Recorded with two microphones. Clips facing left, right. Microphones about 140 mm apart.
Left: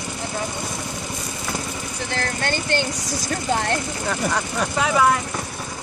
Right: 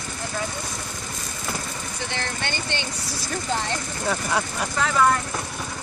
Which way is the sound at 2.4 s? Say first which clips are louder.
Left 6 dB; 45° left (ahead or behind).